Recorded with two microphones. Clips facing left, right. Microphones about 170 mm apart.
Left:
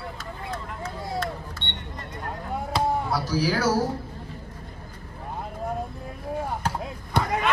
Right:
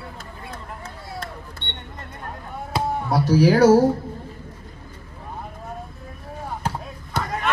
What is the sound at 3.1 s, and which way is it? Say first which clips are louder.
Speech: right 8 dB; 60° right (ahead or behind).